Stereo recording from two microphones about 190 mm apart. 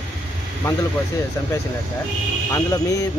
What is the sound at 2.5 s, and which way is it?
Speech, 15° left (ahead or behind).